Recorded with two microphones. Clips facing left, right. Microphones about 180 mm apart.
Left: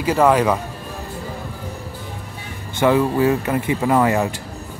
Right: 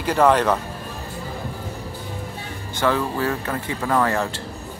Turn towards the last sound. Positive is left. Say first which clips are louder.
# left 4 dB
turn(degrees=15)  # may be behind; listen again after turning